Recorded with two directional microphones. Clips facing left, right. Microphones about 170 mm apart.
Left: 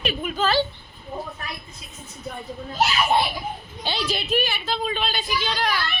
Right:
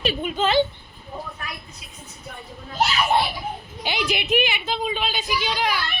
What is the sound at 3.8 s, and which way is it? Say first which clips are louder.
A woman's voice: right 2 dB; 15° right (ahead or behind).